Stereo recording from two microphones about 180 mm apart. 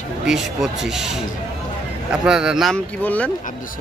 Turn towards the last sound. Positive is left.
turn(degrees=10)  # may be behind; listen again after turning